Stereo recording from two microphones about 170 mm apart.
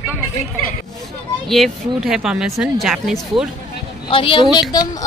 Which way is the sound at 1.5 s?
Centre (ahead or behind).